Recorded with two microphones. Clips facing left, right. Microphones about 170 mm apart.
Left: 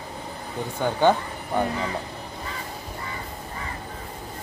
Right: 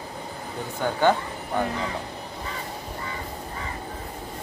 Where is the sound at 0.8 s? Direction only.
15° left (ahead or behind).